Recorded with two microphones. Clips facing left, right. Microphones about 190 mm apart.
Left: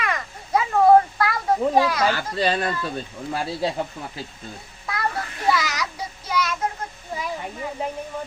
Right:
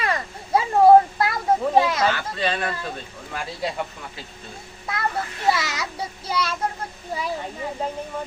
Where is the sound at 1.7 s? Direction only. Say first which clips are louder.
Right 1 dB; 25° right (ahead or behind).